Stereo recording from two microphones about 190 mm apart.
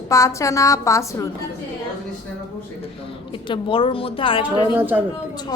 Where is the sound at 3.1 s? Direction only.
25° left (ahead or behind).